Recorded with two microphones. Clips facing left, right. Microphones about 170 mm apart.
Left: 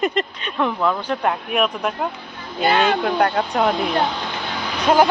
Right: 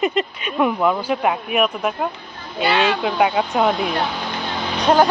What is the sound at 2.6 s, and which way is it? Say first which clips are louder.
Speech: left 1 dB; 50° left (ahead or behind).